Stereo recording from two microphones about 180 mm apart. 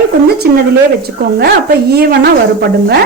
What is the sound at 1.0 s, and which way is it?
A woman's voice, 60° right (ahead or behind).